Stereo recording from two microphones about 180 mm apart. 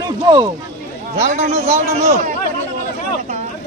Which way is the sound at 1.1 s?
40° right (ahead or behind).